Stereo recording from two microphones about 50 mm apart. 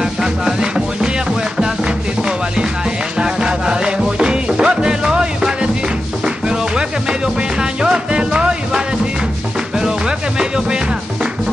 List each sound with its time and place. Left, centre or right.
0.0 s music: centre